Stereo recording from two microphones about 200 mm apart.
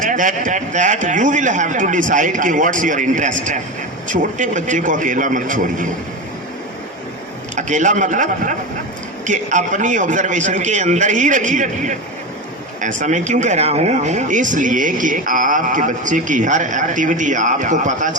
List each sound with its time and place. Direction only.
0.0 s speech: 40° right (ahead or behind)
7.5 s speech: 40° right (ahead or behind)
13.0 s speech: 35° right (ahead or behind)